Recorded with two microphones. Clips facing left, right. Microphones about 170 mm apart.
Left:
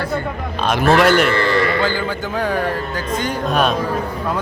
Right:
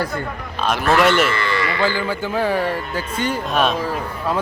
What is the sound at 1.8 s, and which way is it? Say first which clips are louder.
Speech: even; 5° right (ahead or behind).